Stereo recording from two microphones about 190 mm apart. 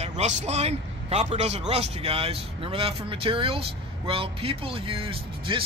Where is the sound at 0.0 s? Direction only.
35° right (ahead or behind).